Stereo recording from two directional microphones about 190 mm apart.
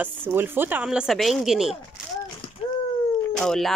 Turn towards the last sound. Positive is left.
turn(degrees=5)  # may be behind; listen again after turning